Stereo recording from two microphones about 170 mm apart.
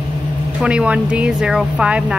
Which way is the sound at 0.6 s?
5° right (ahead or behind).